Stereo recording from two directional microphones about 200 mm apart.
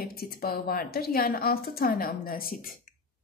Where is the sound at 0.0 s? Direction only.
50° left (ahead or behind).